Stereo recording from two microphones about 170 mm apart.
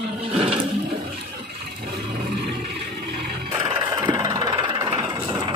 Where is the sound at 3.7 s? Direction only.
30° right (ahead or behind).